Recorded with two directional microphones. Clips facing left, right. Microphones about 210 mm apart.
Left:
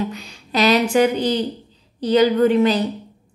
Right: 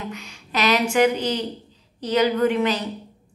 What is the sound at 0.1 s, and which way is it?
A woman's voice, 35° left (ahead or behind).